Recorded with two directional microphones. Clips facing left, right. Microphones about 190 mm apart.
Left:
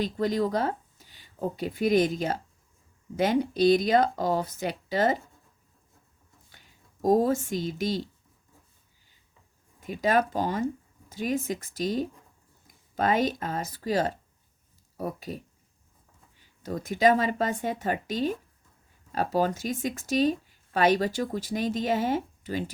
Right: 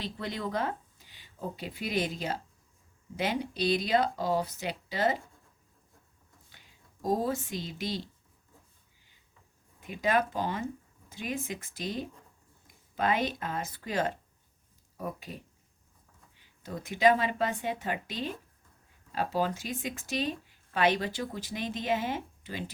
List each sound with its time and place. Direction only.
0.0 s speech: 40° left (ahead or behind)
7.0 s speech: 45° left (ahead or behind)
9.8 s speech: 40° left (ahead or behind)
16.6 s speech: 40° left (ahead or behind)